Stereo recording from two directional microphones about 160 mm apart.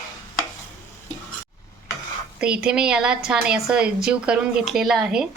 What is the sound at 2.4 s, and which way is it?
A woman's voice, 5° right (ahead or behind).